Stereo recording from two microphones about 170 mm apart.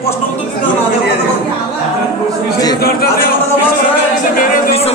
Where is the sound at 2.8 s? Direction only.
65° left (ahead or behind).